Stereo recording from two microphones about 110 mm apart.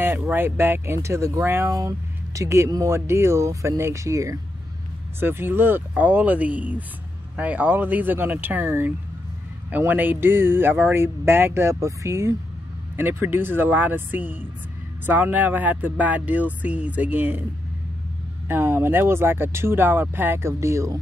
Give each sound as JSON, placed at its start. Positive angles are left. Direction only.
{"t": 0.3, "sound": "speech", "side_deg": -20}
{"t": 18.5, "sound": "speech", "side_deg": -20}